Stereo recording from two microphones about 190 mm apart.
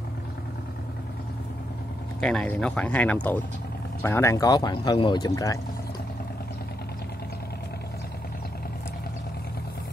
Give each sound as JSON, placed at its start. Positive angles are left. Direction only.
{"t": 2.1, "sound": "speech", "side_deg": 5}